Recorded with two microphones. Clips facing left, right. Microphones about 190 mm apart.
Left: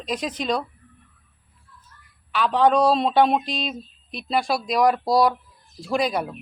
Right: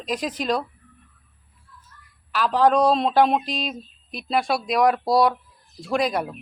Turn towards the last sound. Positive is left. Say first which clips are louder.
# even
turn(degrees=0)  # may be behind; listen again after turning